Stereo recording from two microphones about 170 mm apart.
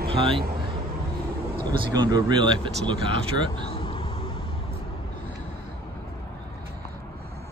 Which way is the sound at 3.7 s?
30° left (ahead or behind).